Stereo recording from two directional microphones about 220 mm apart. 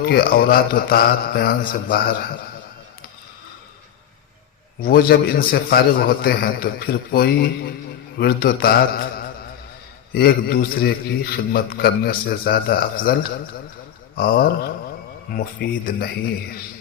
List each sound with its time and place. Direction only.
0.0 s a man's voice: 40° left (ahead or behind)
4.8 s a man's voice: 45° left (ahead or behind)
14.2 s a man's voice: 40° left (ahead or behind)